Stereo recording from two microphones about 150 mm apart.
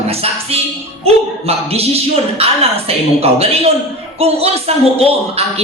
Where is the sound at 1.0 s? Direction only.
40° right (ahead or behind).